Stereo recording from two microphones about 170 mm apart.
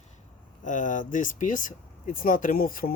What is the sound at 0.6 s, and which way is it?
Speech, 50° left (ahead or behind).